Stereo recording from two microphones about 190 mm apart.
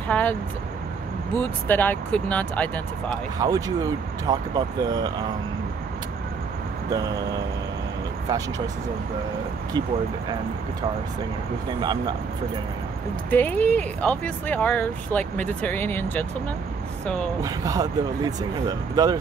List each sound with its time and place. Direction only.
0.1 s speech: 10° left (ahead or behind)
3.3 s speech: 20° right (ahead or behind)
6.9 s speech: 20° right (ahead or behind)
8.3 s speech: 20° right (ahead or behind)
13.3 s speech: 10° left (ahead or behind)
17.4 s speech: 20° right (ahead or behind)